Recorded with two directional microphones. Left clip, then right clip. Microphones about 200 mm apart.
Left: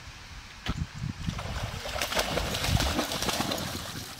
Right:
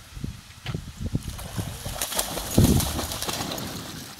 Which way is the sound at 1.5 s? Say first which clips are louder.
Even; centre (ahead or behind).